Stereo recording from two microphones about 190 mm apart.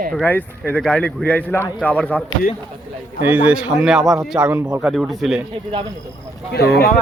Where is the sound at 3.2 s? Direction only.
10° right (ahead or behind).